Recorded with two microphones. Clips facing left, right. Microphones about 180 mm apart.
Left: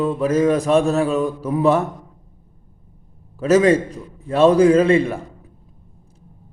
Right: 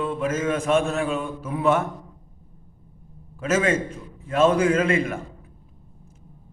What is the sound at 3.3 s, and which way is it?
A man's voice, 35° left (ahead or behind).